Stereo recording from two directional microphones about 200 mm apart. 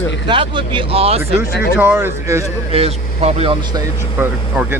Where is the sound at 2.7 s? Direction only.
30° right (ahead or behind).